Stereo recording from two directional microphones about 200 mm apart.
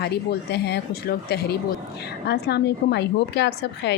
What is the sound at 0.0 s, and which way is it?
A woman's voice, 55° left (ahead or behind).